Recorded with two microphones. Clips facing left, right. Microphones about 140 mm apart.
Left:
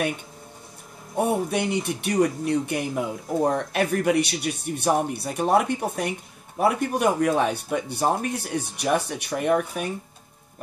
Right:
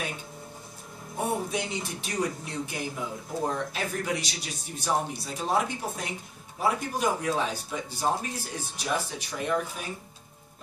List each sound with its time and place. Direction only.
1.1 s speech: 65° left (ahead or behind)